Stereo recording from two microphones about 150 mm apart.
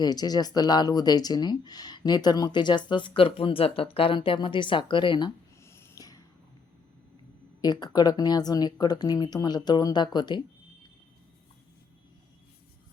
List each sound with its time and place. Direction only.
0.0 s speech: 25° left (ahead or behind)
5.6 s snort: 20° left (ahead or behind)
7.6 s speech: 25° left (ahead or behind)